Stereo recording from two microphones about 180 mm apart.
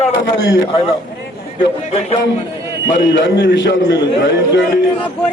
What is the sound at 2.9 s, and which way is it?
A man's voice, 90° left.